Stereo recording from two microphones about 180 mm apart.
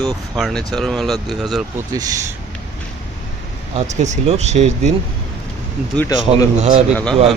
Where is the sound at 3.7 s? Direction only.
40° right (ahead or behind).